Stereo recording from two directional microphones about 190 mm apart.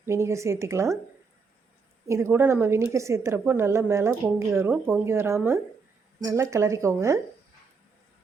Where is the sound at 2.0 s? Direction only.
15° right (ahead or behind).